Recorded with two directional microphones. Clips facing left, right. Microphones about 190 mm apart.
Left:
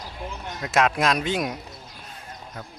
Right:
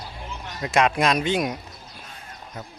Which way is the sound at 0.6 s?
Centre (ahead or behind).